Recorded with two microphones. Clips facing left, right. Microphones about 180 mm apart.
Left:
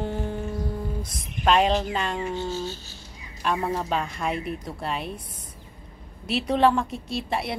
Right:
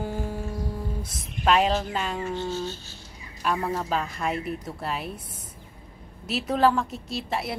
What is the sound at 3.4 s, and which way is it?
A woman's voice, centre (ahead or behind).